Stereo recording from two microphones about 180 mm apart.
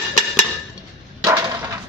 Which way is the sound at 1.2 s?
20° right (ahead or behind).